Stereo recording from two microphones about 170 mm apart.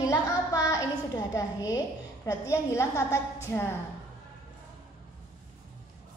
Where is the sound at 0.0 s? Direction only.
20° left (ahead or behind).